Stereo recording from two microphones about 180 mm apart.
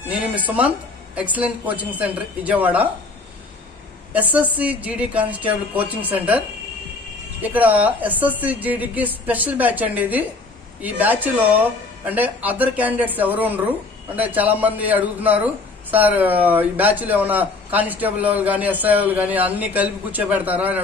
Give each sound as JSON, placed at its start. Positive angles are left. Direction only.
{"t": 0.1, "sound": "speech", "side_deg": -10}
{"t": 4.1, "sound": "speech", "side_deg": -10}
{"t": 7.4, "sound": "speech", "side_deg": -10}